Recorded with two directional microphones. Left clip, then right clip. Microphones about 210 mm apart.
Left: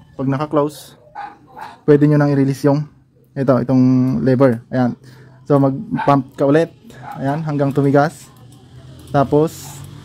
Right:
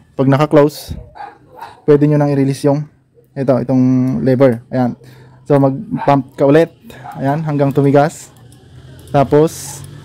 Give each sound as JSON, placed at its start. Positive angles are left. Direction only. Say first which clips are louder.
{"t": 0.1, "sound": "a man's voice", "louder": "right 8 dB", "side_deg": -35}
{"t": 1.9, "sound": "speech", "louder": "right 2 dB", "side_deg": 0}
{"t": 9.1, "sound": "speech", "louder": "right 4 dB", "side_deg": -5}